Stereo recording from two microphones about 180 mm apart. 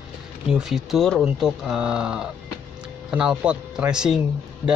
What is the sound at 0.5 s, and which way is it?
Speech, centre (ahead or behind).